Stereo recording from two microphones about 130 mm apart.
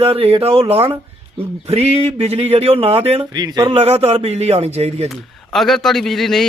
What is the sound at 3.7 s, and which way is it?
Speech, 50° right (ahead or behind).